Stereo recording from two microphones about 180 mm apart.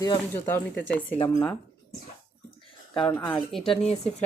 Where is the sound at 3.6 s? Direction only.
35° left (ahead or behind).